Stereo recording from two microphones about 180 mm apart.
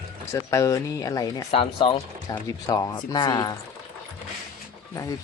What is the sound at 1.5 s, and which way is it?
Speech, 30° left (ahead or behind).